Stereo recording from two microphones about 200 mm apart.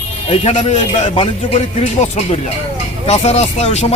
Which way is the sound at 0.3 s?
35° left (ahead or behind).